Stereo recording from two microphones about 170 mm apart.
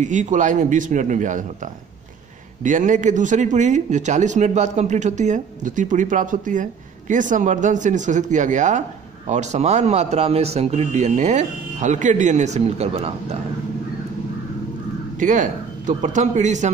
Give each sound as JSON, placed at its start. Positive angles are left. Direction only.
{"t": 0.0, "sound": "a man's voice", "side_deg": -45}
{"t": 15.1, "sound": "speech", "side_deg": -50}